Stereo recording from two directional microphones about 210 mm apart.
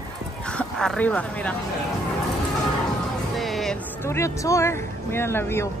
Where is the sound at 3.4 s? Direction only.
Centre (ahead or behind).